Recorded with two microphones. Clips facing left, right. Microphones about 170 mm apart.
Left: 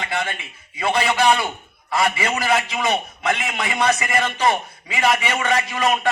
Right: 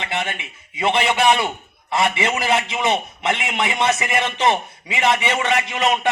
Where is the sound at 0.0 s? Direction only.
25° right (ahead or behind).